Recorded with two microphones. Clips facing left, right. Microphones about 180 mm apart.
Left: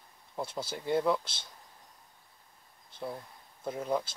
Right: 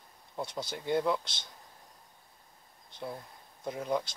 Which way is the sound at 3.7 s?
Centre (ahead or behind).